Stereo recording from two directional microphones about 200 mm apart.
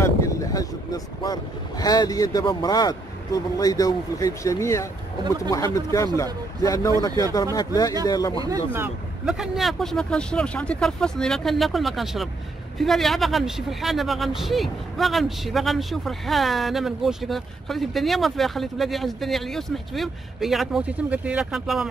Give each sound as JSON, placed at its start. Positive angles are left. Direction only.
{"t": 0.0, "sound": "vehicle", "side_deg": 15}
{"t": 3.5, "sound": "speech", "side_deg": 20}
{"t": 8.7, "sound": "speech", "side_deg": -5}